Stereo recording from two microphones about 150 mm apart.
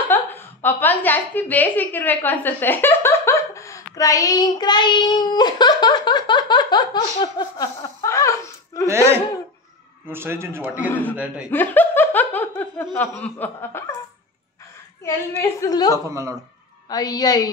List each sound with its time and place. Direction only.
0.1 s a woman's voice: 15° left (ahead or behind)
8.8 s a man's voice: 20° right (ahead or behind)
10.9 s laughter: 10° left (ahead or behind)
11.1 s a man's voice: 5° right (ahead or behind)
11.5 s laughter: 10° left (ahead or behind)
15.0 s laughter: 15° left (ahead or behind)
15.7 s a woman's voice: 25° left (ahead or behind)
16.1 s a woman's voice: 20° right (ahead or behind)
16.9 s a woman's voice: 25° left (ahead or behind)